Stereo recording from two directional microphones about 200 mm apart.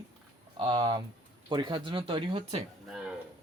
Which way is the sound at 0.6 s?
20° right (ahead or behind).